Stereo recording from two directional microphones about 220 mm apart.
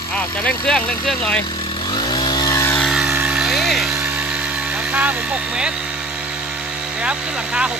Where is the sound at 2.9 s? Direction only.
5° right (ahead or behind).